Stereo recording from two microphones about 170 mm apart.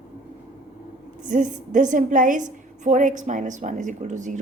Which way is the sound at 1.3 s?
50° right (ahead or behind).